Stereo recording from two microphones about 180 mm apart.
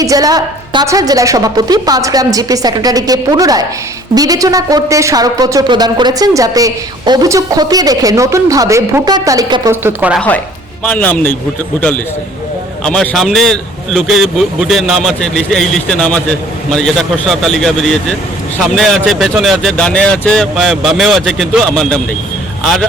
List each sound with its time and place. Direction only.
0.0 s speech: 20° right (ahead or behind)
10.2 s speech: 10° left (ahead or behind)
12.8 s a man's voice: 5° left (ahead or behind)